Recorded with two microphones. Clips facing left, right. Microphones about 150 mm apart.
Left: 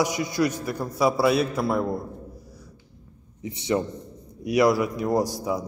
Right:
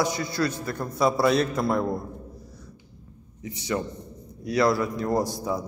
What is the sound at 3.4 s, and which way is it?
A man's voice, 25° left (ahead or behind).